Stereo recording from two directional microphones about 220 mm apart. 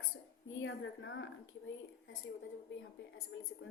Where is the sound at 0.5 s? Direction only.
60° left (ahead or behind).